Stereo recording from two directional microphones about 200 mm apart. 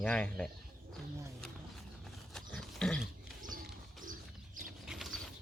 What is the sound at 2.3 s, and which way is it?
Pig, centre (ahead or behind).